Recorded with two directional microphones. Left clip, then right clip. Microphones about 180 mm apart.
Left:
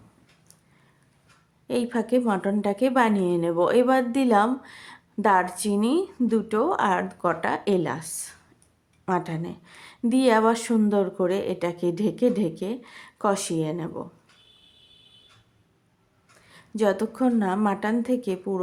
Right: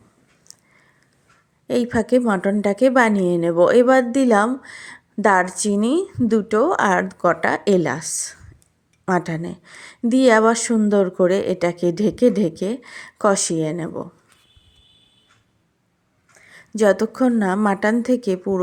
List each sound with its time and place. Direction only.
1.6 s a woman's voice: 30° right (ahead or behind)
16.5 s a woman's voice: 25° right (ahead or behind)